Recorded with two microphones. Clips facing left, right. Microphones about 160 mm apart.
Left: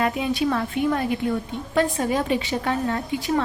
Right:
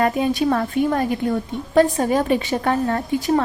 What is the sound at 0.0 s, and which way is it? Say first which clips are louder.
Speech: right 4 dB; 45° right (ahead or behind).